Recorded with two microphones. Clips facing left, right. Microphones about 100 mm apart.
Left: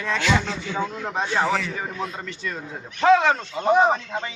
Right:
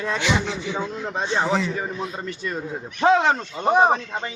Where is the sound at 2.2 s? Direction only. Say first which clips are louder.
Right 3 dB; 30° right (ahead or behind).